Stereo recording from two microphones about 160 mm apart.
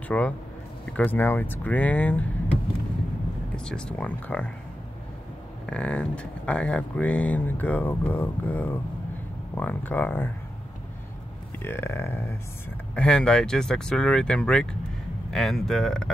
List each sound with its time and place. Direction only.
0.1 s speech: 5° left (ahead or behind)
3.5 s speech: 5° left (ahead or behind)
5.7 s speech: 10° left (ahead or behind)
11.6 s speech: 15° left (ahead or behind)